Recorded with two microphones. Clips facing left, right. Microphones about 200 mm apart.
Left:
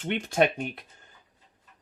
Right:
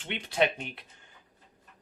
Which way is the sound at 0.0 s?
45° left (ahead or behind).